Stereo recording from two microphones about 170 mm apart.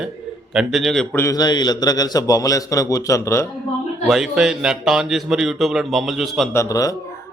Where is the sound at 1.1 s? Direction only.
20° left (ahead or behind).